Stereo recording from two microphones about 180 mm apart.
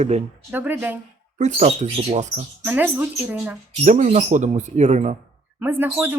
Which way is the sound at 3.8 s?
40° right (ahead or behind).